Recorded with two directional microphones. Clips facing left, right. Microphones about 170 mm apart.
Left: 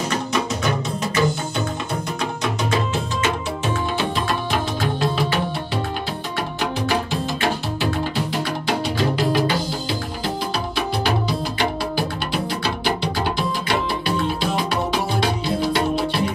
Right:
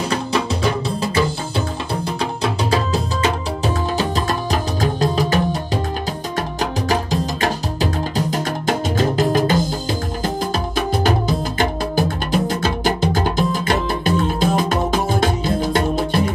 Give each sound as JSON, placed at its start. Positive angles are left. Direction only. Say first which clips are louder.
{"t": 1.0, "sound": "music", "louder": "right 1 dB", "side_deg": -30}
{"t": 2.4, "sound": "music", "louder": "right 3 dB", "side_deg": -35}
{"t": 6.6, "sound": "music", "louder": "right 1 dB", "side_deg": -40}
{"t": 11.1, "sound": "music", "louder": "right 3 dB", "side_deg": -45}